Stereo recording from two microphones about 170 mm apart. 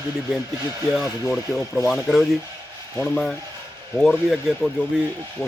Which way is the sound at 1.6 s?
20° left (ahead or behind).